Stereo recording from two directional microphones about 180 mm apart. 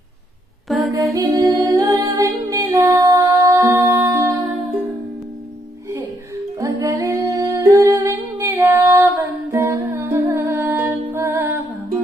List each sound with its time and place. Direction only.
0.7 s mantra: centre (ahead or behind)
0.9 s music: 20° right (ahead or behind)
6.6 s humming: 20° right (ahead or behind)